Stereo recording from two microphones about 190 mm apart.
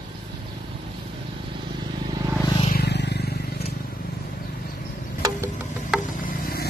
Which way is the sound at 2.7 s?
60° left (ahead or behind).